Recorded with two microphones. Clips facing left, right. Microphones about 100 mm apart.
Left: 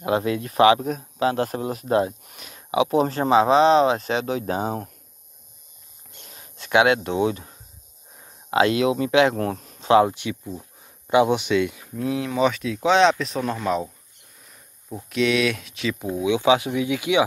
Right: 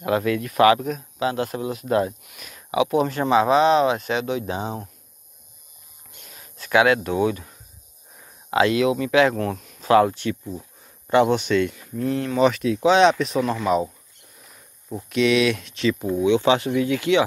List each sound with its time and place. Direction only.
0.0 s speech: 25° left (ahead or behind); by 4.9 s 45° left (ahead or behind)
6.2 s a sound: 30° left (ahead or behind)
8.2 s speech: 30° left (ahead or behind)
9.8 s speech: 20° left (ahead or behind)